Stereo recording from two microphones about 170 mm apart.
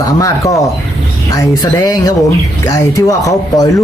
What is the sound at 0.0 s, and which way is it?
Speech, 20° left (ahead or behind).